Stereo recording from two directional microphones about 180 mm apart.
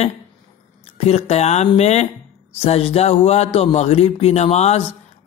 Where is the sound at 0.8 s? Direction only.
35° left (ahead or behind).